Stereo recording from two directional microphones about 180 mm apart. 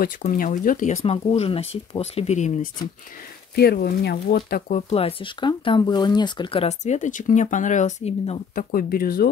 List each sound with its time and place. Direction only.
0.2 s speech: 45° left (ahead or behind)
3.5 s speech: 60° left (ahead or behind); by 8.4 s 40° left (ahead or behind)
8.5 s speech: 50° left (ahead or behind)